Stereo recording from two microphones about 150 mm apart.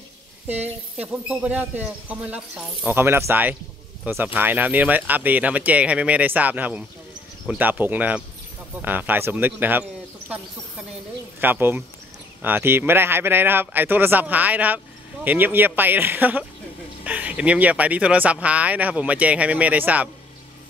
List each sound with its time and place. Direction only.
0.9 s speech: 10° right (ahead or behind)
11.4 s speech: 15° right (ahead or behind)